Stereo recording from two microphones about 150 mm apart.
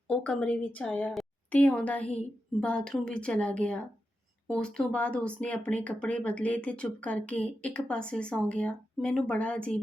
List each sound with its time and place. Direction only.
0.1 s speech: 10° left (ahead or behind)